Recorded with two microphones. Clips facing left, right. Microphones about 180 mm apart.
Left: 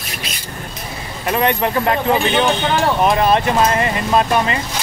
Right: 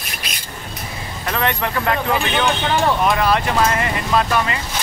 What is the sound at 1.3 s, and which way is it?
Speech, 20° left (ahead or behind).